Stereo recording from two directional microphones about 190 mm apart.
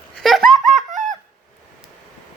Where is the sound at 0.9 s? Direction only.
40° right (ahead or behind).